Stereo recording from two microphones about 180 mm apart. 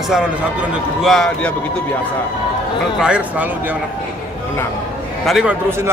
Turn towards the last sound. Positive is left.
turn(degrees=-15)  # may be behind; listen again after turning